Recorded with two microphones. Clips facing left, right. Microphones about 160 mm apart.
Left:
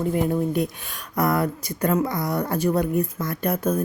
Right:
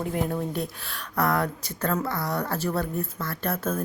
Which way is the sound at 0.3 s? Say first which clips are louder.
Left 6 dB; 15° left (ahead or behind).